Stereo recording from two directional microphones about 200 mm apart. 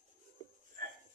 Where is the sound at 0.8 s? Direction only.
45° right (ahead or behind).